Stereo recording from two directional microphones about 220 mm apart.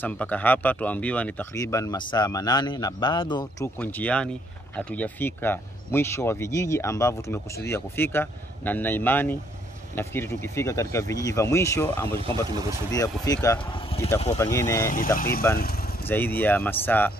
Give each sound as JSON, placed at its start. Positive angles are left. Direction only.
{"t": 0.0, "sound": "speech", "side_deg": 5}
{"t": 12.2, "sound": "speech", "side_deg": -25}
{"t": 12.9, "sound": "speech", "side_deg": 15}
{"t": 14.4, "sound": "speech", "side_deg": 15}
{"t": 14.9, "sound": "speech", "side_deg": 40}
{"t": 15.6, "sound": "vehicle", "side_deg": 45}
{"t": 16.0, "sound": "speech", "side_deg": 10}